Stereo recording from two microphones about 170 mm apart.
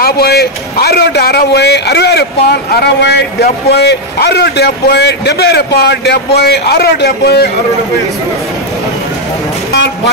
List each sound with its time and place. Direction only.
0.0 s a man's voice: 70° left (ahead or behind)